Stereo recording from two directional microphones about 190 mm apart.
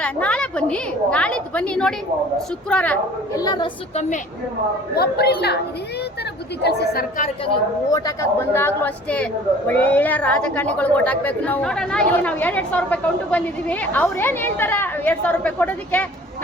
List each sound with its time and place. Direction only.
0.0 s a woman's voice: 5° left (ahead or behind)
3.3 s a woman's voice: 20° left (ahead or behind)
4.9 s a woman's voice: 55° left (ahead or behind)
6.6 s a woman's voice: 60° left (ahead or behind)
7.9 s a woman's voice: 15° left (ahead or behind)